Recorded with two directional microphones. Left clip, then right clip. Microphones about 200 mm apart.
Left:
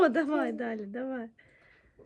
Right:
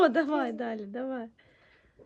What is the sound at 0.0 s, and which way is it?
A woman's voice, 5° right (ahead or behind).